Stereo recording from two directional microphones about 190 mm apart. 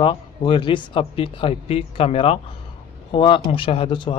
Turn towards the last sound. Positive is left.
turn(degrees=25)  # may be behind; listen again after turning